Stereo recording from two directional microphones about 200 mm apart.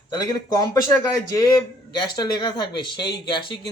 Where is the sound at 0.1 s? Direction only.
20° left (ahead or behind).